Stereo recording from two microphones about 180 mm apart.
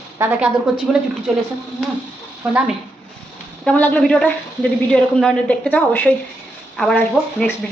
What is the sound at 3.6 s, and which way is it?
A woman's voice, 10° left (ahead or behind).